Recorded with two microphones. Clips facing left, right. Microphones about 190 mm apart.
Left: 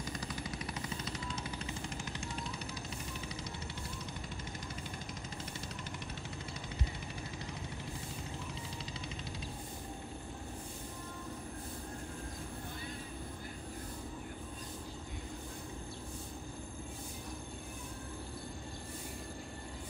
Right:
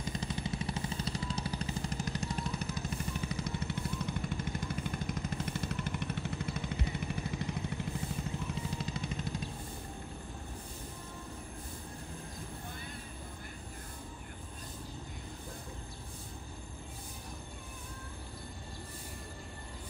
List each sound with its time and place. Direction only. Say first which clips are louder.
0.0 s vehicle: right 3 dB; 25° right (ahead or behind); by 2.7 s 40° right (ahead or behind)
3.3 s vehicle: right 6 dB; 55° right (ahead or behind)
8.8 s vehicle: right 5 dB; 50° right (ahead or behind)